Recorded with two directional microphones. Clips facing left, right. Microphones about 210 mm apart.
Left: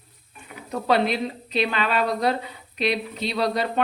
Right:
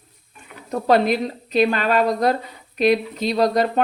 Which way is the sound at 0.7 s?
45° right (ahead or behind).